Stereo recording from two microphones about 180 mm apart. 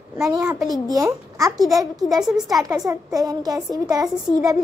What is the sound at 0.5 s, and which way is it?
A child's voice, 20° right (ahead or behind).